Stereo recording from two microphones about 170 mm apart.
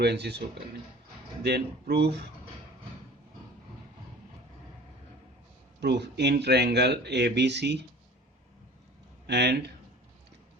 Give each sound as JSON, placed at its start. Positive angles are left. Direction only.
{"t": 0.0, "sound": "speech", "side_deg": -75}
{"t": 5.8, "sound": "speech", "side_deg": -85}
{"t": 9.2, "sound": "speech", "side_deg": -75}